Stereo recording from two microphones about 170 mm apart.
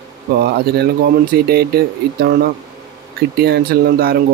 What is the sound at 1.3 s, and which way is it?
Speech, 65° right (ahead or behind).